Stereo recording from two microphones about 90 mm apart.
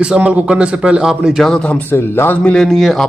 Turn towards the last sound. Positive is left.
turn(degrees=5)  # may be behind; listen again after turning